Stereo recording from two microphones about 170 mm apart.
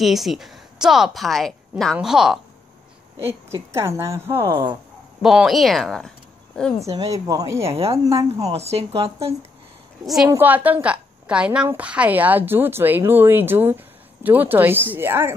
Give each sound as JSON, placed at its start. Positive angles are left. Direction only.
{"t": 0.0, "sound": "a woman's voice", "side_deg": 0}
{"t": 3.7, "sound": "a woman's voice", "side_deg": -15}
{"t": 5.2, "sound": "speech", "side_deg": -5}
{"t": 6.8, "sound": "a woman's voice", "side_deg": -20}
{"t": 7.7, "sound": "speech", "side_deg": -35}
{"t": 8.0, "sound": "a woman's voice", "side_deg": -20}
{"t": 8.5, "sound": "speech", "side_deg": -35}
{"t": 10.0, "sound": "a woman's voice", "side_deg": 0}